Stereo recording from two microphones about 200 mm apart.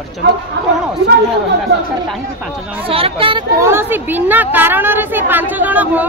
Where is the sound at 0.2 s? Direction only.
55° right (ahead or behind).